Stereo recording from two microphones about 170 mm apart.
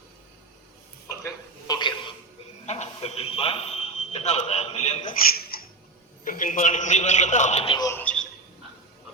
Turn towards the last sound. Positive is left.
turn(degrees=20)  # may be behind; listen again after turning